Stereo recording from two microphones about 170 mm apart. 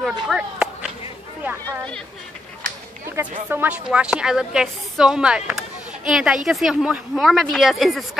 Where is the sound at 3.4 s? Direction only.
10° right (ahead or behind).